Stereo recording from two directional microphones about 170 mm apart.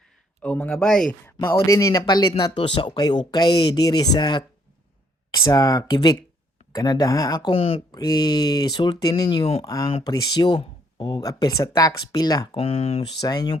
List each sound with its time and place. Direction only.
0.4 s speech: 5° left (ahead or behind)
1.4 s speech: 15° left (ahead or behind)
9.6 s speech: 20° left (ahead or behind)
12.5 s speech: 35° left (ahead or behind)
13.1 s speech: 20° left (ahead or behind)